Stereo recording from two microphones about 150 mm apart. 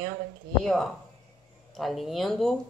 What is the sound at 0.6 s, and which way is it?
Speech, centre (ahead or behind).